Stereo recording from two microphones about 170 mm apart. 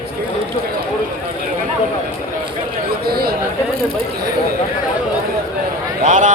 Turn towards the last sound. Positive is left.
turn(degrees=-45)  # may be behind; listen again after turning